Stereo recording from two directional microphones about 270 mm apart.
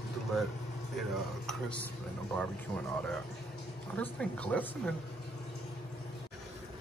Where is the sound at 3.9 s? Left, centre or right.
Centre.